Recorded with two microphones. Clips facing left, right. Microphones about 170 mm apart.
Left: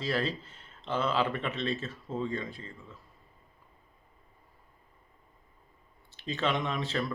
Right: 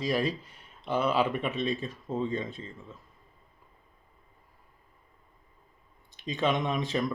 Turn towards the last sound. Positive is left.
turn(degrees=-15)  # may be behind; listen again after turning